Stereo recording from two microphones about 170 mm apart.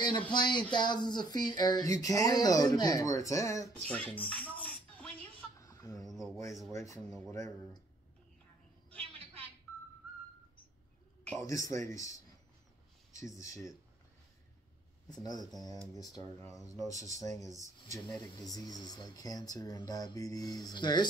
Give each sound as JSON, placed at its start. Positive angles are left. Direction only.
{"t": 0.0, "sound": "speech", "side_deg": 25}
{"t": 4.6, "sound": "music", "side_deg": 10}
{"t": 5.6, "sound": "goat", "side_deg": 20}
{"t": 6.0, "sound": "a sound", "side_deg": 0}
{"t": 6.7, "sound": "speech", "side_deg": 15}
{"t": 11.2, "sound": "speech", "side_deg": 20}
{"t": 16.8, "sound": "speech", "side_deg": 20}